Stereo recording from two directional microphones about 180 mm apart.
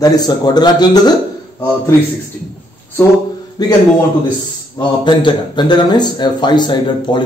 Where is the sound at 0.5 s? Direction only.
20° left (ahead or behind).